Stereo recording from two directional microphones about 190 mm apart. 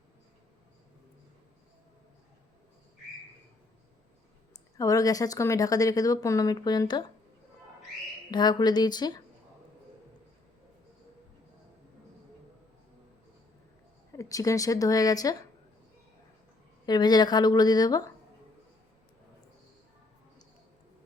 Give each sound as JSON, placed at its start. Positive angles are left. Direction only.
{"t": 4.5, "sound": "speech", "side_deg": 20}
{"t": 8.3, "sound": "speech", "side_deg": 20}
{"t": 14.1, "sound": "speech", "side_deg": 15}
{"t": 16.8, "sound": "speech", "side_deg": 20}